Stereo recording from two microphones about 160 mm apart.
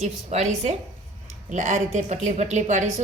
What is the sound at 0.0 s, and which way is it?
A woman's voice, 45° right (ahead or behind).